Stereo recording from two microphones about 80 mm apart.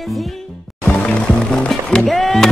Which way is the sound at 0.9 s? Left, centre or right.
Centre.